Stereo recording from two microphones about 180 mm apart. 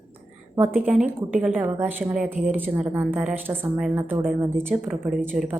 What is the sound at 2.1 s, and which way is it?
Speech, 45° right (ahead or behind).